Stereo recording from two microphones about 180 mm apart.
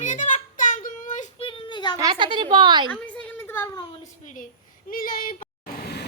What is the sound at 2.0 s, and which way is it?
Speech, 25° right (ahead or behind).